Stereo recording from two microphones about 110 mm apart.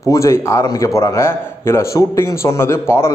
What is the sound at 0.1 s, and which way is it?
A man's voice, 25° left (ahead or behind).